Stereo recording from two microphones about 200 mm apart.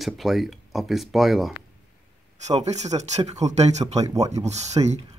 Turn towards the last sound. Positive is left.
turn(degrees=-35)  # may be behind; listen again after turning